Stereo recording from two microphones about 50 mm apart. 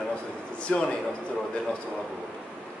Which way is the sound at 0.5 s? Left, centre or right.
Left.